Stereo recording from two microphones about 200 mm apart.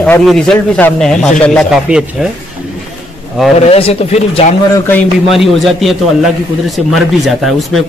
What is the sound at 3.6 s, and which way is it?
Speech, 30° left (ahead or behind).